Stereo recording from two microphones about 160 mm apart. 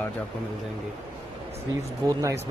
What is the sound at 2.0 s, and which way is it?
Speech, 25° right (ahead or behind).